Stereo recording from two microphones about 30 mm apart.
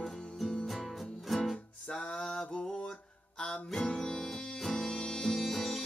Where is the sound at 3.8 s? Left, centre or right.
Left.